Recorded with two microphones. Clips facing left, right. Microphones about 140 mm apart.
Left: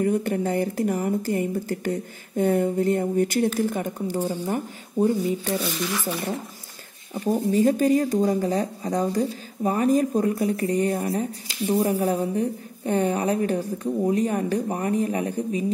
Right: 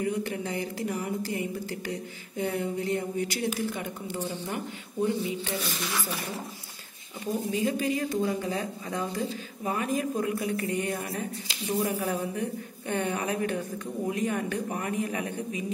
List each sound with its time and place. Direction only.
0.0 s speech: 50° left (ahead or behind)
7.2 s speech: 45° left (ahead or behind)